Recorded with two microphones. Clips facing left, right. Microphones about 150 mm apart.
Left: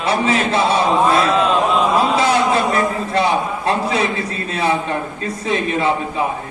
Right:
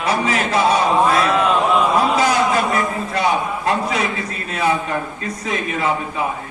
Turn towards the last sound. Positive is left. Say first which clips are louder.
# left 4 dB
turn(degrees=30)  # may be behind; listen again after turning